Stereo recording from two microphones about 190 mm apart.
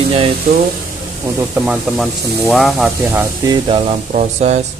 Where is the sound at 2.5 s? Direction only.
Centre (ahead or behind).